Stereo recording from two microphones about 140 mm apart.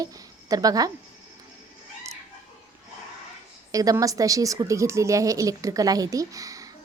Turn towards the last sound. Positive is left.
turn(degrees=-25)  # may be behind; listen again after turning